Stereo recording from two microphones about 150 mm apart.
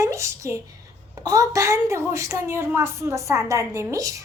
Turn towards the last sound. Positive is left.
turn(degrees=-20)  # may be behind; listen again after turning